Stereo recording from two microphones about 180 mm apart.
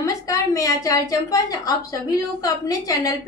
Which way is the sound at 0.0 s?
20° left (ahead or behind).